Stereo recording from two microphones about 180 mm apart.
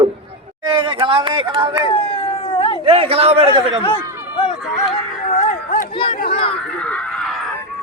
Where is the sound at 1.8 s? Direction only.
30° left (ahead or behind).